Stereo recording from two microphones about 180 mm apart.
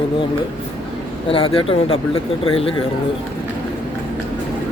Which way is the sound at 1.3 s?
30° left (ahead or behind).